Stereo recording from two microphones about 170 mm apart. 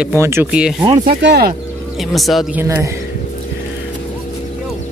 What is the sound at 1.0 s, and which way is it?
Speech, 70° right (ahead or behind).